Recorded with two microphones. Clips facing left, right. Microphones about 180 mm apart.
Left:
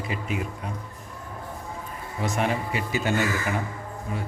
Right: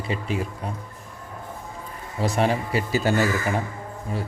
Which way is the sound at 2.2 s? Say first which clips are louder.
Right 4 dB; 35° right (ahead or behind).